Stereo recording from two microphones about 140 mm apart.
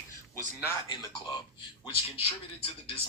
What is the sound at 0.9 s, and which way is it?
Speech, 30° left (ahead or behind).